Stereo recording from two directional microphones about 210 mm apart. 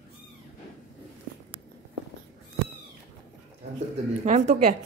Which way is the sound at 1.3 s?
40° right (ahead or behind).